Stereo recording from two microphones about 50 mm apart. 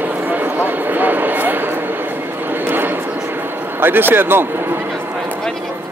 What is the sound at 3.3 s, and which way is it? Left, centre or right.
Speech, right.